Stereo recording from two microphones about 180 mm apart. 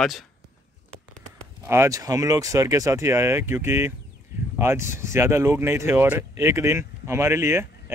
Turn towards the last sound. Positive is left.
turn(degrees=-15)  # may be behind; listen again after turning